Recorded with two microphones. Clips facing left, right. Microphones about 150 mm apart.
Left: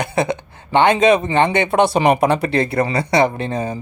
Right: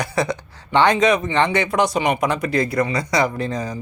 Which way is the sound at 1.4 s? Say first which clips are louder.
Left 3 dB; 25° left (ahead or behind).